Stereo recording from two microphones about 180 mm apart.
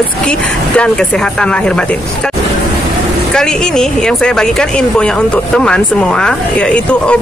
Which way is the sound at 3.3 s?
5° left (ahead or behind).